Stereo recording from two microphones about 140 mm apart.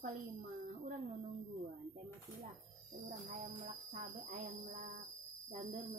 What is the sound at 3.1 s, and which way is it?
Music, 90° right.